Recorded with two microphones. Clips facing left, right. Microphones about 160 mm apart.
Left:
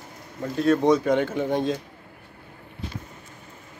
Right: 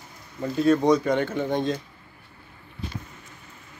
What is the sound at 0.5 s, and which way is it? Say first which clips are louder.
Speech: even; centre (ahead or behind).